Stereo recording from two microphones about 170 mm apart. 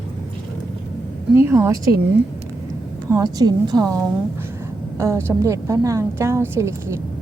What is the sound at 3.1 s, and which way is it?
A woman's voice, 20° right (ahead or behind).